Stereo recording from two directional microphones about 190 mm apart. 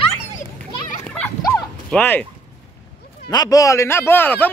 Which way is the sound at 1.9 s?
10° left (ahead or behind).